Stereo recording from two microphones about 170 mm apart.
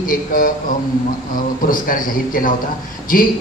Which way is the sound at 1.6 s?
55° left (ahead or behind).